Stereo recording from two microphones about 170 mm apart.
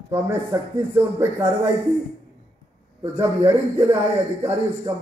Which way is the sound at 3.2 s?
15° right (ahead or behind).